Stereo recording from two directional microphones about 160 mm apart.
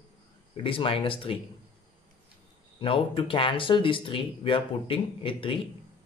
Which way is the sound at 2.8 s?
35° left (ahead or behind).